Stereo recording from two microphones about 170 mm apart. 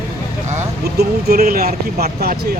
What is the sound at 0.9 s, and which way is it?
Speech, 65° right (ahead or behind).